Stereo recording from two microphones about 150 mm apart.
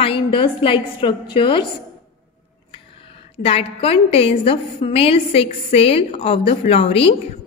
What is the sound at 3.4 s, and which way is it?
A woman's voice, 40° left (ahead or behind).